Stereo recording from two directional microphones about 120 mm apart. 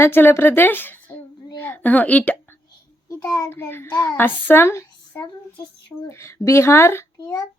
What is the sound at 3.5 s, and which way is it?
A woman's voice, 20° left (ahead or behind).